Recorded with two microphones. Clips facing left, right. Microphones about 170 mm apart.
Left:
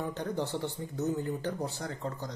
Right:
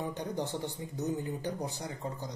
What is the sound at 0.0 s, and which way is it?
Speech, 15° right (ahead or behind).